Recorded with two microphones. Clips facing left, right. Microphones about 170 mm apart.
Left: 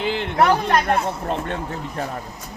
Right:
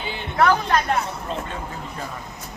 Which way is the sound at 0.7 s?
55° left (ahead or behind).